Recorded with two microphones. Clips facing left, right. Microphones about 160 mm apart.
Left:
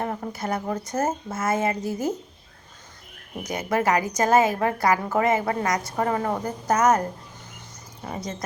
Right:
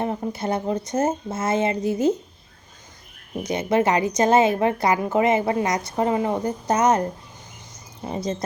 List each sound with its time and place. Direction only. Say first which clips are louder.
0.0 s a woman's voice: right 3 dB; 20° right (ahead or behind)
3.5 s a woman's voice: right 3 dB; 25° right (ahead or behind)